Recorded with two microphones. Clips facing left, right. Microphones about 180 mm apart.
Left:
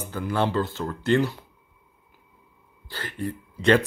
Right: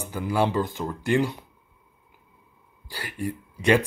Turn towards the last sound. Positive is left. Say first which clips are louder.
# left 1 dB
turn(degrees=-10)  # may be behind; listen again after turning